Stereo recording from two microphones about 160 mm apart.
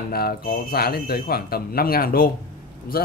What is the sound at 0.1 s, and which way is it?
Speech, 75° left (ahead or behind).